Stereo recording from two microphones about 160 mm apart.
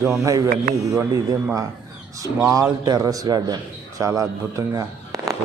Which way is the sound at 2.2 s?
20° right (ahead or behind).